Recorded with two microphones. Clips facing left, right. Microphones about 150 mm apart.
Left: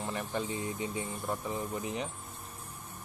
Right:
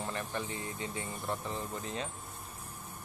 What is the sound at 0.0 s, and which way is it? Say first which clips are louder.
Speech: left 2 dB; 10° left (ahead or behind).